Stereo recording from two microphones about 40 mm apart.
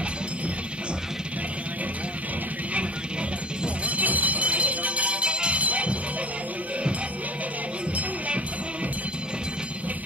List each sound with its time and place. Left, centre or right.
3.8 s music: right